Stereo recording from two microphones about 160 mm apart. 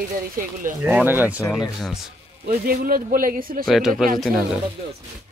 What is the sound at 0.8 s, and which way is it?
Speech, 10° right (ahead or behind).